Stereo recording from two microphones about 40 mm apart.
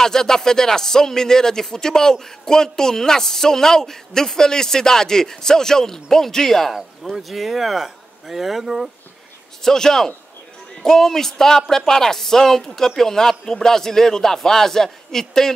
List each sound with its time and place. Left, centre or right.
0.0 s speech: centre
6.7 s speech: centre
9.6 s speech: centre